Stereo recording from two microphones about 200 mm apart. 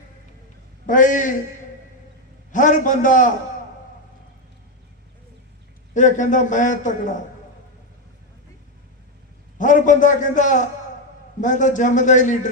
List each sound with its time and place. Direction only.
0.9 s a man's voice: 40° left (ahead or behind)
2.5 s a man's voice: 40° left (ahead or behind)
5.9 s a man's voice: 40° left (ahead or behind)
9.6 s a man's voice: 40° left (ahead or behind)